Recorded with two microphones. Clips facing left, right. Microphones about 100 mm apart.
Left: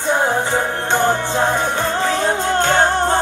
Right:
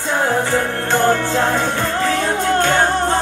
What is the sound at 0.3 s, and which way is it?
Music, 20° left (ahead or behind).